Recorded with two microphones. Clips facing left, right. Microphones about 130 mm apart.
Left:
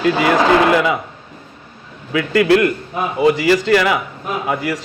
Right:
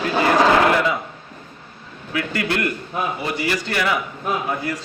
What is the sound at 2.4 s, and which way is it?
A man's voice, 90° left.